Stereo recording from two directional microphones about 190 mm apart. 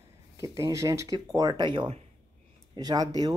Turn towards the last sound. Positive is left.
turn(degrees=-20)  # may be behind; listen again after turning